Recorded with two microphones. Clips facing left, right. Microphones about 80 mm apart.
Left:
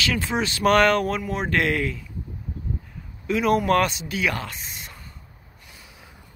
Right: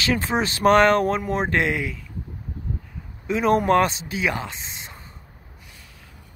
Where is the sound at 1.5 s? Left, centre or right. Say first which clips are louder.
Left 4 dB; centre.